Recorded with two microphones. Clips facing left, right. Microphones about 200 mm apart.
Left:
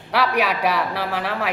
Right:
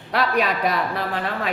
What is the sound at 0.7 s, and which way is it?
Speech, 80° left.